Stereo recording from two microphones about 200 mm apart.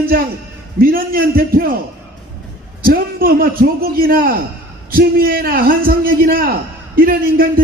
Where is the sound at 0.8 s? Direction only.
45° right (ahead or behind).